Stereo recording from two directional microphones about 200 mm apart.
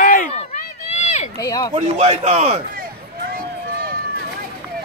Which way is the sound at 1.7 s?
30° right (ahead or behind).